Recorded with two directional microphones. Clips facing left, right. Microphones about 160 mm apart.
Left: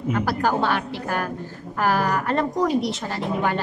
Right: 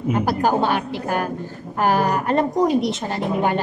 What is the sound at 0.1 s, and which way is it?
A man's voice, 20° right (ahead or behind).